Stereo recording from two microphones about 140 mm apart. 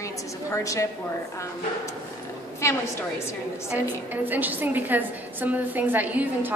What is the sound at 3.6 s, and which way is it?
A woman's voice, 15° right (ahead or behind).